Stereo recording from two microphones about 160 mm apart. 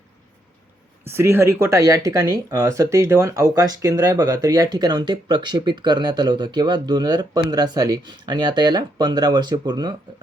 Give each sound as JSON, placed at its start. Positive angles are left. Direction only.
{"t": 1.0, "sound": "speech", "side_deg": -15}